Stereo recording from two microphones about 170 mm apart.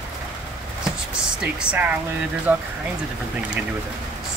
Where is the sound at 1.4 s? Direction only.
10° right (ahead or behind).